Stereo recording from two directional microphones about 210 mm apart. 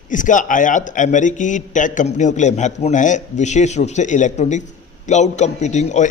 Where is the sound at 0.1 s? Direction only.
40° left (ahead or behind).